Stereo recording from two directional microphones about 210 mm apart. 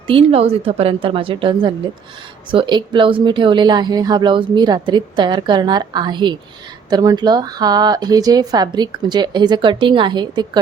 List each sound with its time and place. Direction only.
0.1 s speech: 25° right (ahead or behind)